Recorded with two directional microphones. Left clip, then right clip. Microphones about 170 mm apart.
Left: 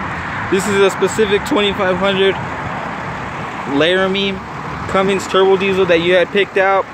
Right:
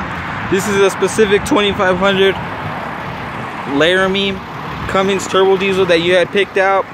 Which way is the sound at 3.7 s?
5° right (ahead or behind).